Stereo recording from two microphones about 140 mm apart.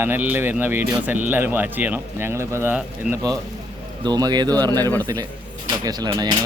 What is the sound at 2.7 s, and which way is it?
Speech, 10° right (ahead or behind).